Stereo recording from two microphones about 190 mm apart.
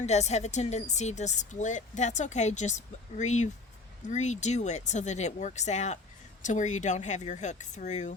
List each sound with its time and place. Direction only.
0.0 s speech: 35° left (ahead or behind)